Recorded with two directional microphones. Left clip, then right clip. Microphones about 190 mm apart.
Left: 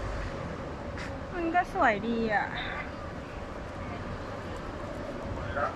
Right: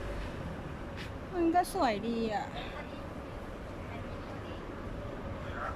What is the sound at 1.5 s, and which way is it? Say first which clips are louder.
Speech: left 7 dB; 20° right (ahead or behind).